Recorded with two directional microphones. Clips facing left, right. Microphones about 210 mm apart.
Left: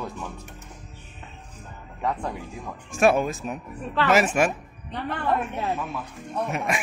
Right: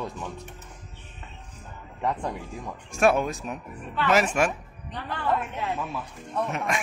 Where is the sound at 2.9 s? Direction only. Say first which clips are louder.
Left 2 dB; 5° left (ahead or behind).